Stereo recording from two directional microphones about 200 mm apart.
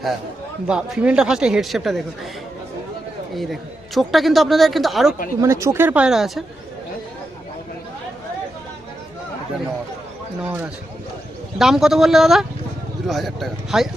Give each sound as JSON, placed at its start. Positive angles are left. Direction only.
{"t": 0.7, "sound": "a man's voice", "side_deg": -5}
{"t": 3.3, "sound": "a man's voice", "side_deg": 0}
{"t": 5.4, "sound": "speech", "side_deg": -15}
{"t": 10.4, "sound": "a man's voice", "side_deg": -5}